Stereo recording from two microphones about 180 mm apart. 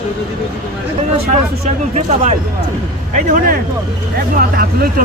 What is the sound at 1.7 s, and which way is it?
A man's voice, 40° right (ahead or behind).